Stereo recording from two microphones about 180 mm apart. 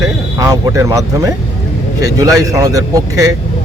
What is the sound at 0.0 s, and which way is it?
A man's voice, 20° right (ahead or behind).